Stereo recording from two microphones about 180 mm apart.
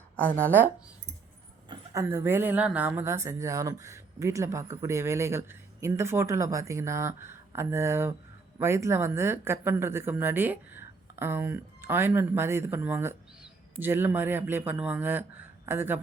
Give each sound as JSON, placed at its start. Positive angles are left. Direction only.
{"t": 0.2, "sound": "speech", "side_deg": 10}
{"t": 1.6, "sound": "a woman's voice", "side_deg": -20}